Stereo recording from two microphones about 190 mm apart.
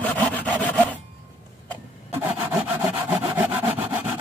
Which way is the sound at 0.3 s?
10° left (ahead or behind).